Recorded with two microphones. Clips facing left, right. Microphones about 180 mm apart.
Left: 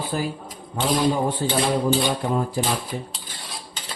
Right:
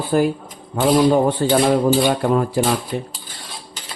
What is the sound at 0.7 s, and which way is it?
Speech, 65° right (ahead or behind).